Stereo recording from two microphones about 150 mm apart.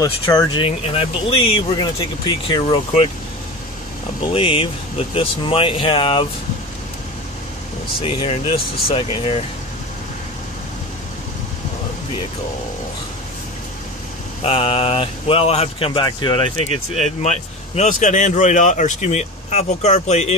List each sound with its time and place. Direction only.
0.0 s speech: 25° left (ahead or behind)
4.3 s speech: 40° left (ahead or behind)
8.0 s speech: 35° left (ahead or behind)
8.5 s speech: 90° left
8.9 s speech: 35° left (ahead or behind)
14.4 s speech: 40° left (ahead or behind)